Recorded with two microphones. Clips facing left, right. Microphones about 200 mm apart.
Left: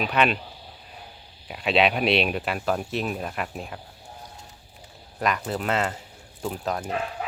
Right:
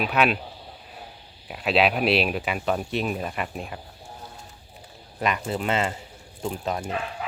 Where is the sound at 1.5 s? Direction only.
Centre (ahead or behind).